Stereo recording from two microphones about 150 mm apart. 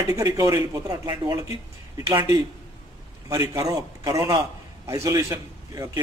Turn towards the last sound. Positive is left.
turn(degrees=-20)  # may be behind; listen again after turning